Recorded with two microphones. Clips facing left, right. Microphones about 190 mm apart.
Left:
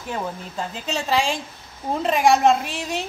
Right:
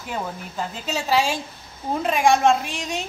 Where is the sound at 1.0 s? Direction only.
10° right (ahead or behind).